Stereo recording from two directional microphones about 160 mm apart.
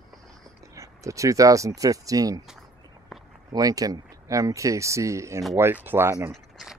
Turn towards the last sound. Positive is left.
turn(degrees=0)  # may be behind; listen again after turning